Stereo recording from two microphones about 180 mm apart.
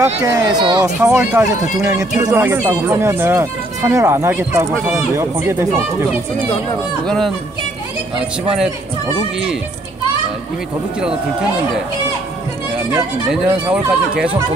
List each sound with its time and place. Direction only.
0.0 s speech: 20° right (ahead or behind)
7.1 s speech: 5° left (ahead or behind)
12.9 s speech: 5° right (ahead or behind)